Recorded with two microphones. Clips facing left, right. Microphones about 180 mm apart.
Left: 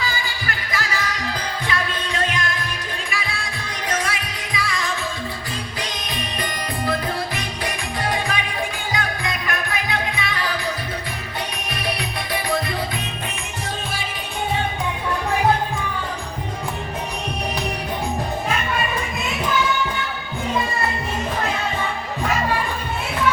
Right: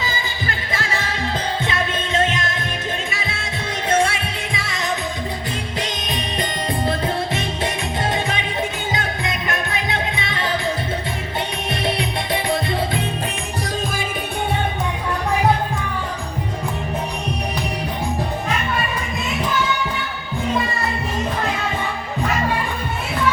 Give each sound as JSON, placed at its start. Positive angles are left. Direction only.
{"t": 0.0, "sound": "music", "side_deg": -25}
{"t": 11.7, "sound": "music", "side_deg": -25}